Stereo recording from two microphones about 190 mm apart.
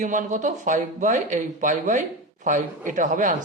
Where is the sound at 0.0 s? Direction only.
40° right (ahead or behind).